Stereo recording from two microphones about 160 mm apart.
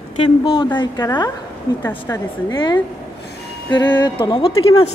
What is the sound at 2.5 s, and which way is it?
Speech, 25° left (ahead or behind).